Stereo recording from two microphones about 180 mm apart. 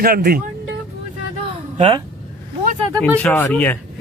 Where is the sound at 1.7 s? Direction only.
30° right (ahead or behind).